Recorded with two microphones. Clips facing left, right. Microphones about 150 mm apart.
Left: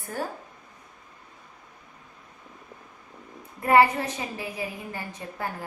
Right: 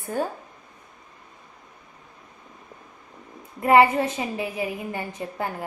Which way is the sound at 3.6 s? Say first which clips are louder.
Right 3 dB; 25° right (ahead or behind).